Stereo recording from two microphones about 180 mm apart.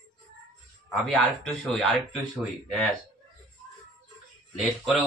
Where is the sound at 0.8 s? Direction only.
Centre (ahead or behind).